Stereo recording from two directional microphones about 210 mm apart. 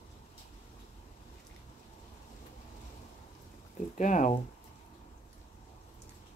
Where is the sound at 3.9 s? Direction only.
35° left (ahead or behind).